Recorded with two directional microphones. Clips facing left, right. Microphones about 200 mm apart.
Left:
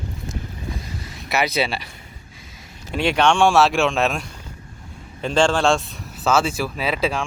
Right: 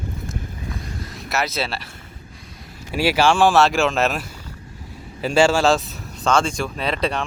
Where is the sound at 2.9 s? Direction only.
5° right (ahead or behind).